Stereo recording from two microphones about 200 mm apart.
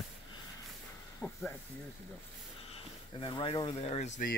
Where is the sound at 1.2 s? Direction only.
5° left (ahead or behind).